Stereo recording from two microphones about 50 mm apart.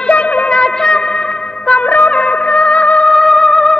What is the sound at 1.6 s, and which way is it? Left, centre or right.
Music, left.